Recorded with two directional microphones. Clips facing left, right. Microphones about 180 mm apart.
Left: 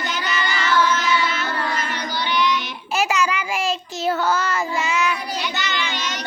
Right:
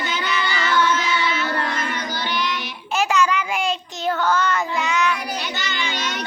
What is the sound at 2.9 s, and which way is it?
Child singing, 5° left (ahead or behind).